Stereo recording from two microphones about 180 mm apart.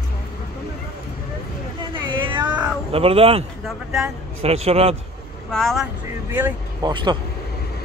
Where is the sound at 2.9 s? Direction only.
30° right (ahead or behind).